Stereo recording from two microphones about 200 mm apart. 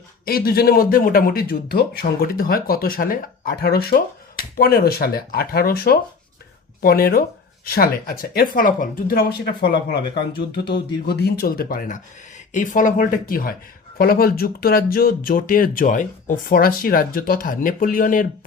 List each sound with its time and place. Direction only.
0.3 s speech: 50° left (ahead or behind)